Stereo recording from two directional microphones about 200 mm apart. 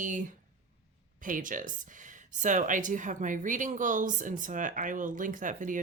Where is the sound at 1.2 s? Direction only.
40° right (ahead or behind).